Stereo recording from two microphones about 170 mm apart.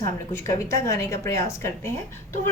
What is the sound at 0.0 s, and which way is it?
A woman's voice, 15° left (ahead or behind).